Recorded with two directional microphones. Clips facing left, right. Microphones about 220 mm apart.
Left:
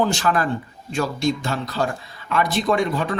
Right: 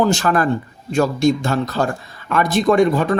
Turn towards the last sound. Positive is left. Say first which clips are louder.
# right 7 dB
turn(degrees=-45)  # may be behind; listen again after turning